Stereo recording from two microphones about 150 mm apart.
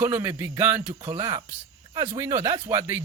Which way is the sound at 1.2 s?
25° right (ahead or behind).